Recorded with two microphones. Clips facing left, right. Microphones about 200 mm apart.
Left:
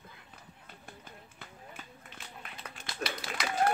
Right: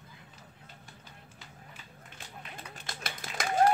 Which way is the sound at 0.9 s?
55° left (ahead or behind).